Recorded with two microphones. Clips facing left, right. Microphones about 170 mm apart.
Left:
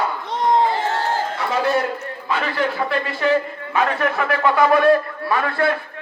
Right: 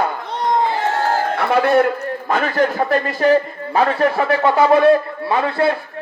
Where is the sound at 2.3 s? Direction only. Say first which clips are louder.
Right 4 dB; 45° right (ahead or behind); by 5.8 s 25° right (ahead or behind).